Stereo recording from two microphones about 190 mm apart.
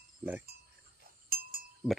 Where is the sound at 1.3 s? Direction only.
50° right (ahead or behind).